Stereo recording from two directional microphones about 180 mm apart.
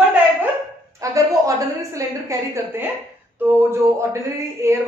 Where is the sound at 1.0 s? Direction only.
20° right (ahead or behind).